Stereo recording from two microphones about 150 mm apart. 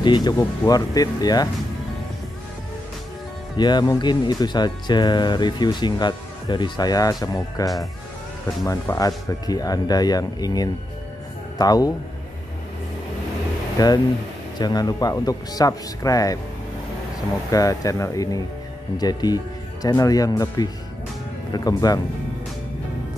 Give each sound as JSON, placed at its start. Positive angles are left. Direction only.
{"t": 0.0, "sound": "speech", "side_deg": 30}
{"t": 3.5, "sound": "speech", "side_deg": 30}
{"t": 8.6, "sound": "speech", "side_deg": 20}
{"t": 13.7, "sound": "speech", "side_deg": 25}
{"t": 17.5, "sound": "speech", "side_deg": 25}